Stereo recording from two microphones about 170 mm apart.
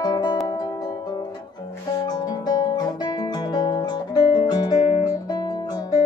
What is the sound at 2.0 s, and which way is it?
Guitar, 25° left (ahead or behind).